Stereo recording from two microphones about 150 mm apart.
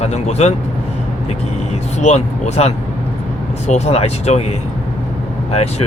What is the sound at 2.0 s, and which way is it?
Speech, 45° left (ahead or behind).